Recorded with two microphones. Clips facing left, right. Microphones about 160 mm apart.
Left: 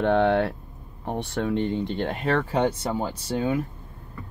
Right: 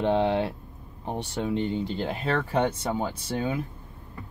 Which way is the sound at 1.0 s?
Centre (ahead or behind).